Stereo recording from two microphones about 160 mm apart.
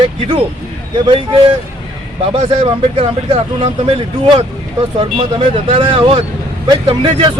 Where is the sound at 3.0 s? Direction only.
35° right (ahead or behind).